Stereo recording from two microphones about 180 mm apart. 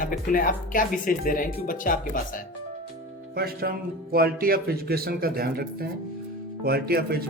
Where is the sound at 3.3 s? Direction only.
60° right (ahead or behind).